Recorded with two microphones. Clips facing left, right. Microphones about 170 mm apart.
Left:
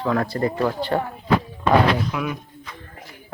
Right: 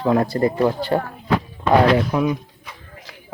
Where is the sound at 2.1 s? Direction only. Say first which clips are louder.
Right 7 dB; 35° right (ahead or behind).